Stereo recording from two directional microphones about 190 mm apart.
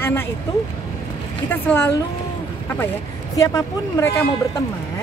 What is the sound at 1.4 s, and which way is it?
Speech, 10° left (ahead or behind).